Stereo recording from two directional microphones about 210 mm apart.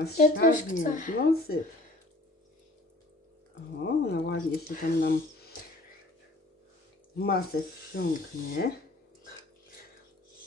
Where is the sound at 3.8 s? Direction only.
50° left (ahead or behind).